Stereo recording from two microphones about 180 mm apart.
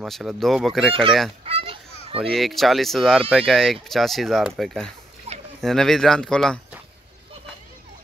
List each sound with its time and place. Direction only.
0.0 s speech: centre (ahead or behind)
1.4 s fowl: 30° right (ahead or behind)
2.1 s speech: centre (ahead or behind)
5.3 s a sound: 35° right (ahead or behind)
5.6 s speech: centre (ahead or behind)